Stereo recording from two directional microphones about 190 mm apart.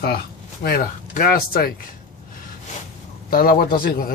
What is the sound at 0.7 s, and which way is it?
Speech, 50° left (ahead or behind).